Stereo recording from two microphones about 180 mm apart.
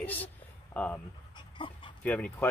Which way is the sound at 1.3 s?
25° left (ahead or behind).